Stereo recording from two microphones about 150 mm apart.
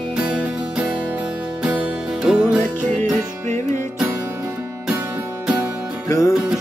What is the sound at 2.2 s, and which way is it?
Music, 5° right (ahead or behind).